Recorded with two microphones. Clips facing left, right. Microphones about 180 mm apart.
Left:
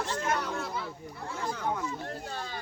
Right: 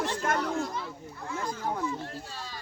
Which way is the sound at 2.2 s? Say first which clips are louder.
Left 4 dB; 55° left (ahead or behind).